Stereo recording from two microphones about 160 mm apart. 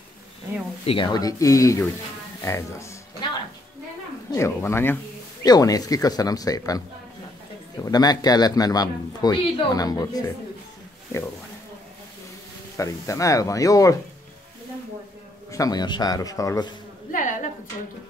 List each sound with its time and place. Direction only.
0.8 s a man's voice: 30° left (ahead or behind)
4.3 s a man's voice: 15° left (ahead or behind)
7.8 s a man's voice: 25° left (ahead or behind)
12.7 s a man's voice: 20° left (ahead or behind)
15.5 s a man's voice: 25° left (ahead or behind)
17.1 s a sound: 55° left (ahead or behind)